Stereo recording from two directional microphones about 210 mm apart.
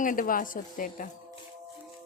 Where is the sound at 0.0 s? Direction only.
40° left (ahead or behind).